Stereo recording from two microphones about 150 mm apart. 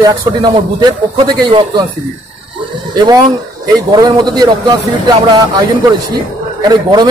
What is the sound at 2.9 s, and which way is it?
A man's voice, 30° right (ahead or behind).